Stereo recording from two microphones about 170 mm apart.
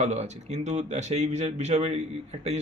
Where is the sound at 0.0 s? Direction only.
45° right (ahead or behind).